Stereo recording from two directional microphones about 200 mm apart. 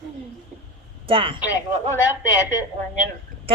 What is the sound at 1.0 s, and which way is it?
Speech, 25° right (ahead or behind).